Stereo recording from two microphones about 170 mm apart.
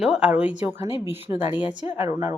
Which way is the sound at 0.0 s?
5° right (ahead or behind).